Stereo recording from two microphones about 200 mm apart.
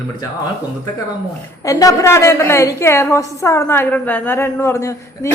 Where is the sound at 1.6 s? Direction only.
15° left (ahead or behind).